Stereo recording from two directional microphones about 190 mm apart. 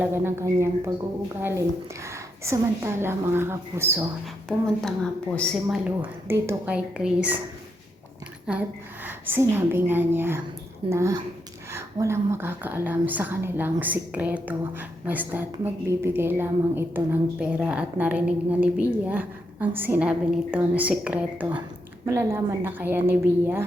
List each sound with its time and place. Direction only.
0.0 s a woman's voice: 10° right (ahead or behind)
4.4 s a woman's voice: centre (ahead or behind)
8.5 s a woman's voice: 5° right (ahead or behind)